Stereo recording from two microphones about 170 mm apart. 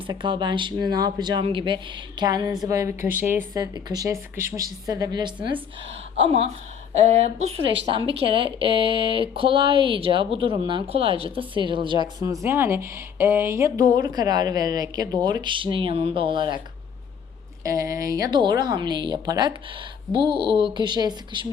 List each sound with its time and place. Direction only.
0.1 s speech: 25° right (ahead or behind)
17.6 s speech: 20° right (ahead or behind)